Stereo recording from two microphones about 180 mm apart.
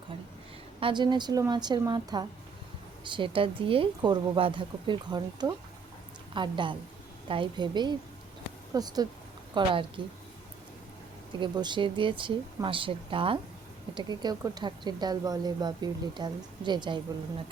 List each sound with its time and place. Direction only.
0.8 s speech: 25° right (ahead or behind)
11.3 s speech: 25° right (ahead or behind)